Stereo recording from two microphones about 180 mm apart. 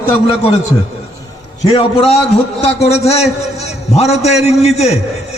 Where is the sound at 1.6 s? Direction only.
30° left (ahead or behind).